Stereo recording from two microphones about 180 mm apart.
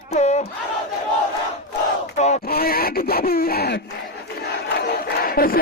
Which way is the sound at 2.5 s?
55° left (ahead or behind).